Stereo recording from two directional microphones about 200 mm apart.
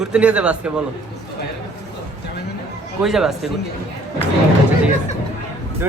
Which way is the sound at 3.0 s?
Centre (ahead or behind).